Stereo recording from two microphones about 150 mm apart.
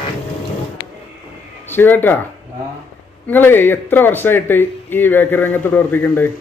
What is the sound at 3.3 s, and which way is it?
Speech, 15° left (ahead or behind).